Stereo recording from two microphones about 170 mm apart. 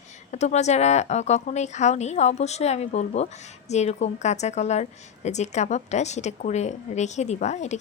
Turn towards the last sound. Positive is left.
turn(degrees=40)  # may be behind; listen again after turning